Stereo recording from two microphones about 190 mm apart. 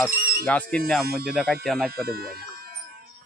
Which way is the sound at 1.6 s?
Centre (ahead or behind).